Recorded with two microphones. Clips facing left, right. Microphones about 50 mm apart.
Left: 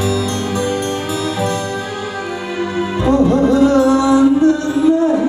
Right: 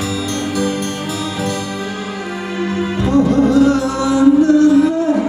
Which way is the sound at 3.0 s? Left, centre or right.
Left.